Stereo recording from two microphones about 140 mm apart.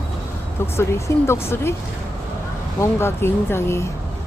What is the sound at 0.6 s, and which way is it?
Speech, 20° left (ahead or behind).